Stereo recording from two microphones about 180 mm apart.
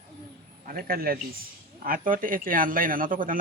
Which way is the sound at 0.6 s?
50° right (ahead or behind).